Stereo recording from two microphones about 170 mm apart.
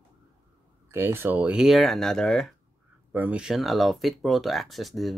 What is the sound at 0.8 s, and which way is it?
Speech, 15° right (ahead or behind).